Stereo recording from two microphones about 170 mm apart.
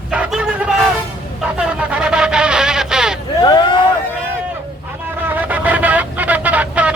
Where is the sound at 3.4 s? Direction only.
25° left (ahead or behind).